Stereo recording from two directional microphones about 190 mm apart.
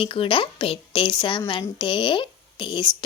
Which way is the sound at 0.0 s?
25° left (ahead or behind).